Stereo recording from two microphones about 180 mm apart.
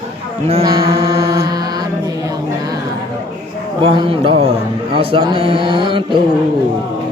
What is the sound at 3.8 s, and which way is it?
Speech, 30° right (ahead or behind).